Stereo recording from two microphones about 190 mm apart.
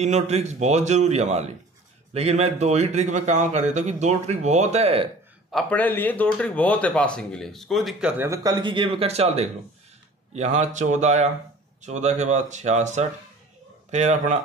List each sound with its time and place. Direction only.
0.0 s a man's voice: 35° right (ahead or behind)
5.5 s speech: 5° left (ahead or behind)
8.2 s a man's voice: 15° right (ahead or behind); by 14.4 s 40° right (ahead or behind)